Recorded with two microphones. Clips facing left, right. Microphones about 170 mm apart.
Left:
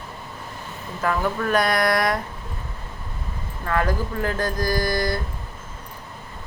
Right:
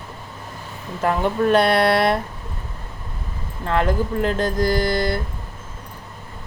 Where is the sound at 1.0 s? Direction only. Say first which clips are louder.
Right 4 dB; 25° right (ahead or behind).